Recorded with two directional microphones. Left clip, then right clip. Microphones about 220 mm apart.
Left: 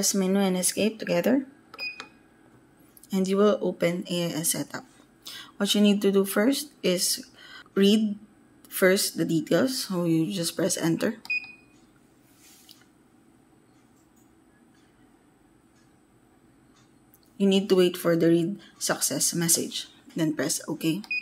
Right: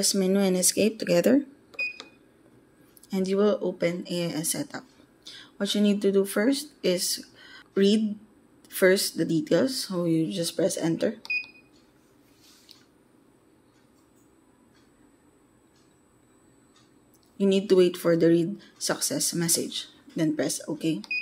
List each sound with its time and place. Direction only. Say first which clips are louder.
0.2 s speech: right 2 dB; 10° right (ahead or behind)
3.1 s speech: left 1 dB; centre (ahead or behind)
7.1 s a sound: left 1 dB; centre (ahead or behind)
8.6 s speech: right 1 dB; centre (ahead or behind)
17.4 s speech: right 1 dB; centre (ahead or behind)